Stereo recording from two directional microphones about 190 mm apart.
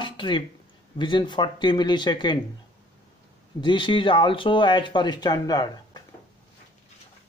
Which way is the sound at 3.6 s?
25° left (ahead or behind).